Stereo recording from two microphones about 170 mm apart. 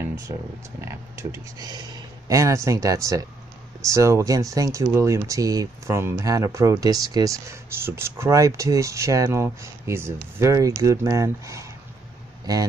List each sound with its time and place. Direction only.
0.7 s speech: 15° right (ahead or behind)